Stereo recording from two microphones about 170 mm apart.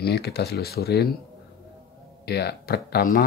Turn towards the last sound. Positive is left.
turn(degrees=60)  # may be behind; listen again after turning